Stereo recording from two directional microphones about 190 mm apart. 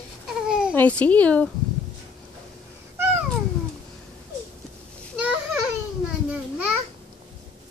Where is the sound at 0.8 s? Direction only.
10° left (ahead or behind).